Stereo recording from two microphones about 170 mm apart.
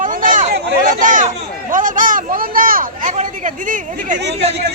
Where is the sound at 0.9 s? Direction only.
50° right (ahead or behind).